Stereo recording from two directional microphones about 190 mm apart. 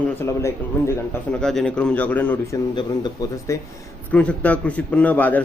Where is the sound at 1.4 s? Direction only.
5° left (ahead or behind).